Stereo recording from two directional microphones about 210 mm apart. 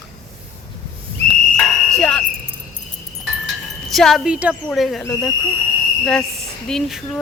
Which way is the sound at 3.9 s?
Centre (ahead or behind).